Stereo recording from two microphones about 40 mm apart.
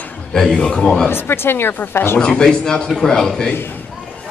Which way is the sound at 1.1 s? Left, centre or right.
Left.